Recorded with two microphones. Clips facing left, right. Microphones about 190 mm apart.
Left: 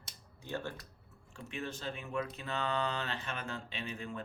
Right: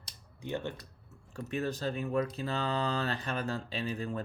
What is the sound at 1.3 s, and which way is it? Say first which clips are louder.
Speech: right 7 dB; 40° right (ahead or behind).